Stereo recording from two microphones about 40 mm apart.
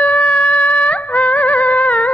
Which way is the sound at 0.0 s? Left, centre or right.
Left.